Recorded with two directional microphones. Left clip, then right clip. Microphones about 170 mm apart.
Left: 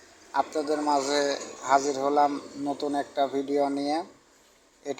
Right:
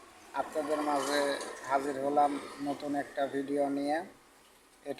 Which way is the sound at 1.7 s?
15° left (ahead or behind).